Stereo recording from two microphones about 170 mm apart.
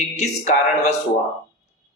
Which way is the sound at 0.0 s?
40° left (ahead or behind).